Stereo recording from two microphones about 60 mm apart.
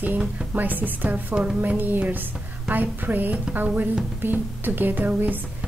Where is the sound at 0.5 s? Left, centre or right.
Right.